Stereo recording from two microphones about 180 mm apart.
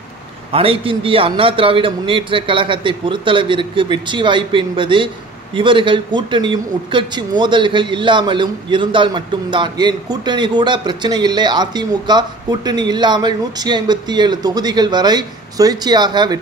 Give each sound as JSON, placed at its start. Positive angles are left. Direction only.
{"t": 0.5, "sound": "a man's voice", "side_deg": -30}